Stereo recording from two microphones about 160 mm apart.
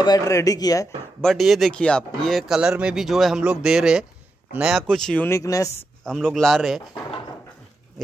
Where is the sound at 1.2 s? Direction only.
Centre (ahead or behind); by 5.9 s 20° left (ahead or behind).